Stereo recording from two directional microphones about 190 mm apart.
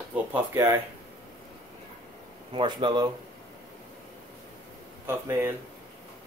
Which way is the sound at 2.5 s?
25° right (ahead or behind).